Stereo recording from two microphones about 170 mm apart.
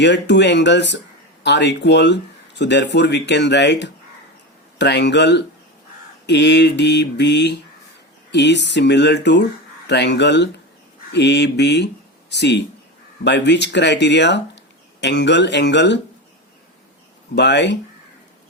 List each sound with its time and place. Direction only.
0.0 s speech: 90° left
17.3 s speech: 90° left